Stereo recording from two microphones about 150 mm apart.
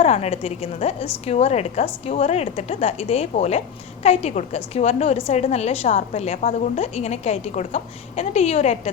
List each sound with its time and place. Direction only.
0.0 s a woman's voice: 45° left (ahead or behind)